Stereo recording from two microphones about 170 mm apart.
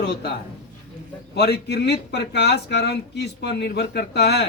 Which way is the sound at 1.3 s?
80° left.